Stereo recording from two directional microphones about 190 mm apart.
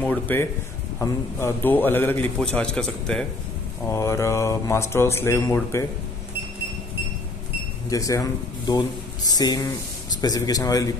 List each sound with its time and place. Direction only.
0.0 s a man's voice: 10° left (ahead or behind)
3.9 s a man's voice: 15° left (ahead or behind)
7.9 s speech: 15° left (ahead or behind)